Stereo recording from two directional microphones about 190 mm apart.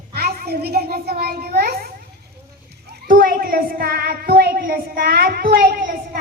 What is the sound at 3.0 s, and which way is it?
Child singing, 50° right (ahead or behind).